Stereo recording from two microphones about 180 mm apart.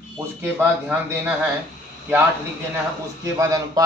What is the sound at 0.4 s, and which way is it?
Speech, 10° right (ahead or behind).